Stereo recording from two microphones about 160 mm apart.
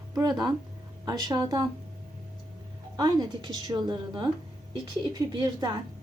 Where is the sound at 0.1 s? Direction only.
25° right (ahead or behind).